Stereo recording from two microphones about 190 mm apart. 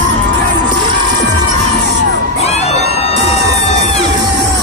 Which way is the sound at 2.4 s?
35° left (ahead or behind).